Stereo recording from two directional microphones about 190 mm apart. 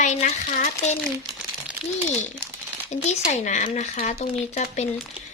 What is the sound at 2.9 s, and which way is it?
A child's voice, 35° left (ahead or behind).